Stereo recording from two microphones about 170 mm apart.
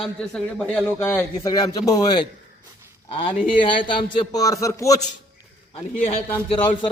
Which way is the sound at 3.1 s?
35° left (ahead or behind).